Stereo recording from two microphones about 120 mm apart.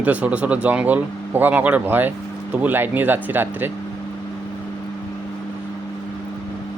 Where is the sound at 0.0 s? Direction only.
10° right (ahead or behind).